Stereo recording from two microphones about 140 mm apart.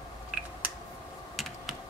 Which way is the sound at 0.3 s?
10° right (ahead or behind).